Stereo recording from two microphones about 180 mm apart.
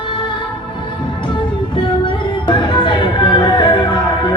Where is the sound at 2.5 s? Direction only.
25° left (ahead or behind).